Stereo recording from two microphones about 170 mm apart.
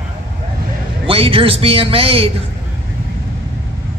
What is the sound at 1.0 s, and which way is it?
A woman's voice, 35° right (ahead or behind).